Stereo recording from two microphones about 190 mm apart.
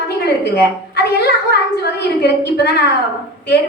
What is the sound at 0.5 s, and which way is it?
A woman's voice, 55° left (ahead or behind).